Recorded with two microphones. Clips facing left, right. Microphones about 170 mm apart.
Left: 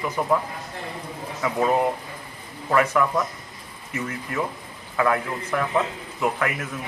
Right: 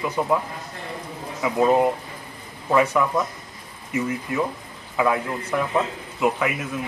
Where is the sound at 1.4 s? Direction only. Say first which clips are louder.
Right 3 dB; 15° right (ahead or behind).